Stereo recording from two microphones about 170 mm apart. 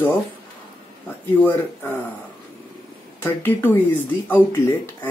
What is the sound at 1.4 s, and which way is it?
Speech, 10° left (ahead or behind).